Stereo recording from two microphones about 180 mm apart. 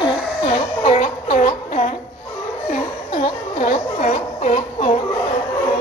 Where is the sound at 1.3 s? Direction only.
45° left (ahead or behind).